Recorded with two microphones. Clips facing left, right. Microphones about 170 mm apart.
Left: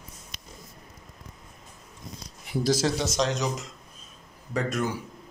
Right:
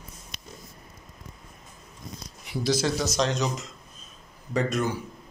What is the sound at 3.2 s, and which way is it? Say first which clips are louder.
Speech: right 1 dB; 15° left (ahead or behind).